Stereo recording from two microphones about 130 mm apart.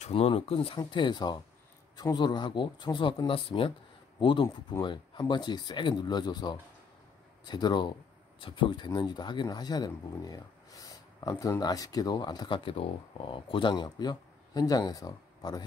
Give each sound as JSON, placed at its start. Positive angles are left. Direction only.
{"t": 0.0, "sound": "speech", "side_deg": 45}
{"t": 0.7, "sound": "speech", "side_deg": 35}